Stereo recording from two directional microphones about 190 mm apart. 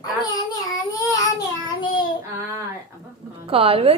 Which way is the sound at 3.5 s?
30° right (ahead or behind).